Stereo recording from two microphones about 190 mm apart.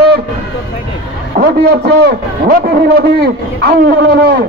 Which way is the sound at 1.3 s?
50° right (ahead or behind).